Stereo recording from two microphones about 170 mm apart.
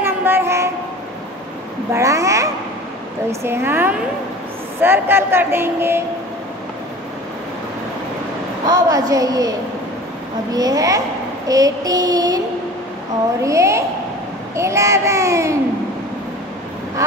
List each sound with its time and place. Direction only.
0.0 s child singing: 15° right (ahead or behind)
2.0 s a woman's voice: 20° right (ahead or behind)
8.6 s a woman's voice: 20° right (ahead or behind)
13.4 s a woman's voice: 20° right (ahead or behind)